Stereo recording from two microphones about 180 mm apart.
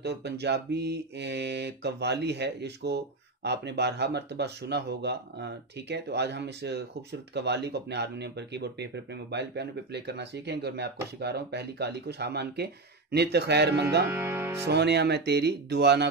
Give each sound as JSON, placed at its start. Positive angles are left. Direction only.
{"t": 0.0, "sound": "speech", "side_deg": -70}
{"t": 14.1, "sound": "music", "side_deg": -10}
{"t": 14.6, "sound": "speech", "side_deg": -70}